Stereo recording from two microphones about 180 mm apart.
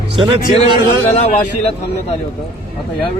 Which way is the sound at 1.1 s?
35° left (ahead or behind).